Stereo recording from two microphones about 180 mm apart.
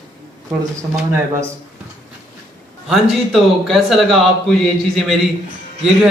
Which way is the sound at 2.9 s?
Centre (ahead or behind).